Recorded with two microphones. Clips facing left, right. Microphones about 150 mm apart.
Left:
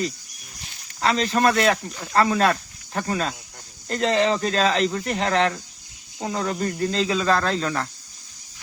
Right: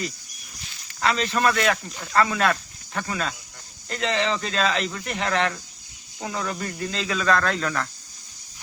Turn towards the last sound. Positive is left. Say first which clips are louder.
# left 1 dB
turn(degrees=30)  # may be behind; listen again after turning